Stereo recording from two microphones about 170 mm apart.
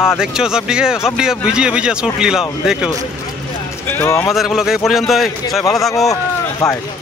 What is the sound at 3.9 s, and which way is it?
Speech, 15° left (ahead or behind).